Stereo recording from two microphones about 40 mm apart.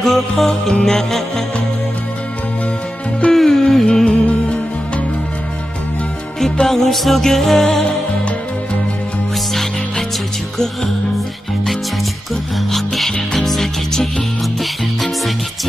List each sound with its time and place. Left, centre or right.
0.0 s music: centre
3.3 s music: centre
3.8 s music: left
6.7 s music: centre
9.5 s music: centre
12.7 s music: centre